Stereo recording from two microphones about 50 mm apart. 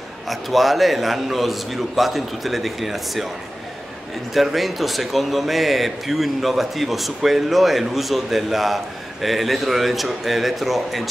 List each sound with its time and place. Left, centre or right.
0.3 s a man's voice: centre
4.3 s a man's voice: centre